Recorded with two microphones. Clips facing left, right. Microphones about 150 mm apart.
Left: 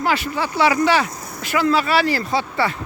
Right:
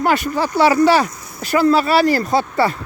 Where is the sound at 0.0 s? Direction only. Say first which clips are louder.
Right 4 dB; 50° right (ahead or behind).